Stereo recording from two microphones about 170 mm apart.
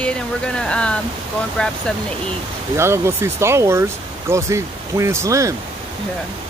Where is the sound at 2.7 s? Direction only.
15° right (ahead or behind).